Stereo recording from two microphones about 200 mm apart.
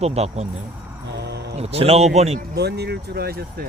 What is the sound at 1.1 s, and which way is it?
Music, 55° right (ahead or behind).